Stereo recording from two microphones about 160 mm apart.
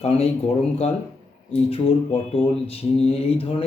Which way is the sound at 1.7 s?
35° left (ahead or behind).